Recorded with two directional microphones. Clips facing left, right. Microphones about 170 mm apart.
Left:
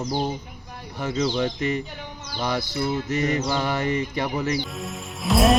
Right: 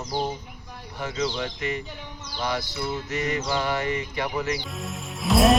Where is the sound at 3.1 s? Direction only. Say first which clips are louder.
Left 3 dB; 45° left (ahead or behind).